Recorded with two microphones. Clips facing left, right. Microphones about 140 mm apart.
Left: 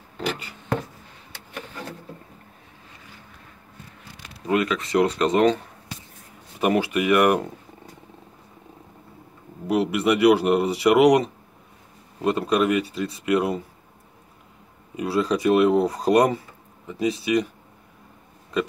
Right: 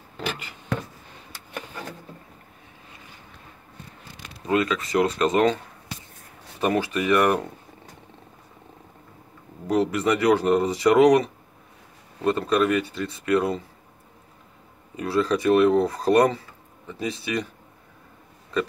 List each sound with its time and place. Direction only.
4.5 s speech: 20° left (ahead or behind)
6.6 s speech: 15° left (ahead or behind)
9.7 s speech: 10° left (ahead or behind)
15.0 s speech: 15° left (ahead or behind)